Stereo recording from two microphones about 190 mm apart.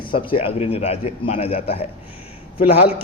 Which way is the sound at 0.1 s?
30° left (ahead or behind).